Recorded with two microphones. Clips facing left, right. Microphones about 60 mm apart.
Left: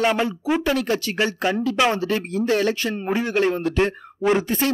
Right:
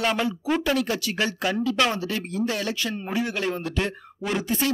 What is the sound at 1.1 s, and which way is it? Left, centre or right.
Speech, left.